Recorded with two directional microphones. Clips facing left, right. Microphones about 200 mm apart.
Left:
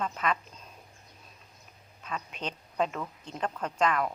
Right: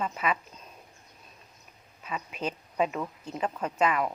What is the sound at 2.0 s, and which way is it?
A woman's voice, 5° right (ahead or behind).